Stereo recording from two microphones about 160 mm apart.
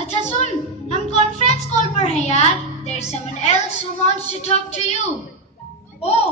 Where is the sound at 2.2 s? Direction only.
45° left (ahead or behind).